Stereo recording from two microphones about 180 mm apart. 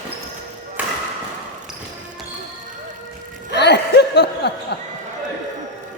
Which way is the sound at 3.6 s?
70° left (ahead or behind).